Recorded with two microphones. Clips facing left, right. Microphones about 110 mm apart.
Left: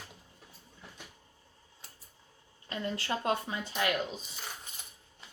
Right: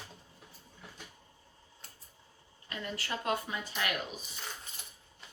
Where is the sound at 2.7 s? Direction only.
25° left (ahead or behind).